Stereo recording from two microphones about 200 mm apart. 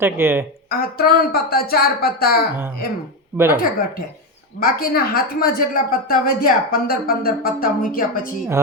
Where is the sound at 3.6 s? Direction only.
45° left (ahead or behind).